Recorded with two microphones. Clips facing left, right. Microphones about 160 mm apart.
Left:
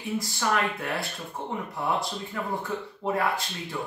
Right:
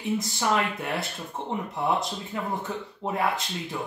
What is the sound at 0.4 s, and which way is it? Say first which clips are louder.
Speech: left 1 dB; 20° right (ahead or behind).